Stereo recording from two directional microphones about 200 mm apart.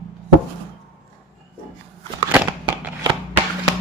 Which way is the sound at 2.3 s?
10° right (ahead or behind).